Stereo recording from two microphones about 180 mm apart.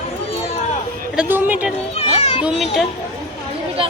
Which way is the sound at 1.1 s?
10° right (ahead or behind).